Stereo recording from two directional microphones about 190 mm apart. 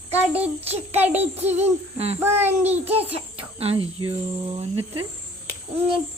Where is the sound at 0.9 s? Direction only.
10° right (ahead or behind).